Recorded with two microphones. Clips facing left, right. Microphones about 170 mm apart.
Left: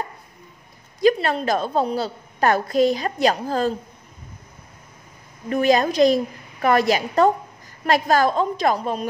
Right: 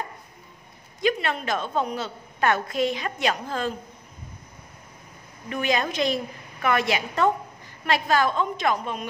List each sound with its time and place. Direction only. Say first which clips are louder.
1.0 s a woman's voice: left 7 dB; 35° left (ahead or behind)
5.5 s a woman's voice: left 7 dB; 40° left (ahead or behind)